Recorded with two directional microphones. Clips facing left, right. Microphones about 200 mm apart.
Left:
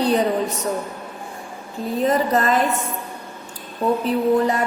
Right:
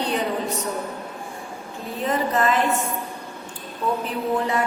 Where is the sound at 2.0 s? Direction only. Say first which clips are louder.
Left 3 dB; 40° left (ahead or behind).